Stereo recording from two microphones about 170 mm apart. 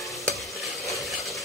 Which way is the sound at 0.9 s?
Centre (ahead or behind).